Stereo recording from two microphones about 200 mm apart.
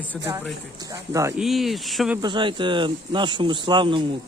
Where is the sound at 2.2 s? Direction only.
25° right (ahead or behind).